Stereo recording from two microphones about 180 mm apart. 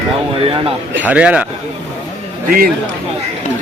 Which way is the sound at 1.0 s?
5° right (ahead or behind).